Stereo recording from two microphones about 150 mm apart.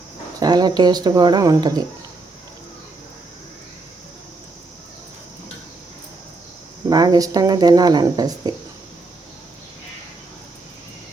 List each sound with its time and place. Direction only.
0.3 s speech: 25° right (ahead or behind)
6.9 s speech: 25° right (ahead or behind)